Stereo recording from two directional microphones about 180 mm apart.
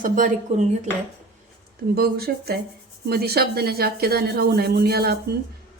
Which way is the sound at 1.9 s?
60° right (ahead or behind).